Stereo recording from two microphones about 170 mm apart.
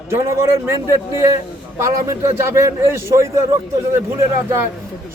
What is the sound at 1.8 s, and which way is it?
A man's voice, 20° right (ahead or behind).